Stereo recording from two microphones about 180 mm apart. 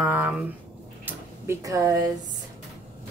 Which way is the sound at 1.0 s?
10° right (ahead or behind).